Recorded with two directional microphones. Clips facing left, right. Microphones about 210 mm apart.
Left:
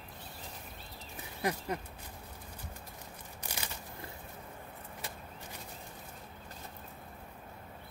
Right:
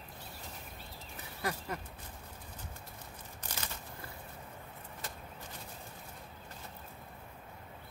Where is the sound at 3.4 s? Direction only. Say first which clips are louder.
Left 2 dB; 10° left (ahead or behind).